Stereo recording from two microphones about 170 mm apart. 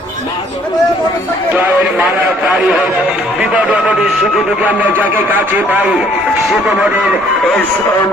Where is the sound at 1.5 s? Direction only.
10° right (ahead or behind).